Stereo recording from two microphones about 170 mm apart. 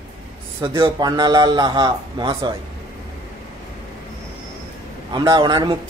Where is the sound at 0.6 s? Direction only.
25° right (ahead or behind).